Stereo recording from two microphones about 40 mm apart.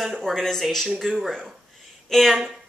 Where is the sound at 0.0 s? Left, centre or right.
Centre.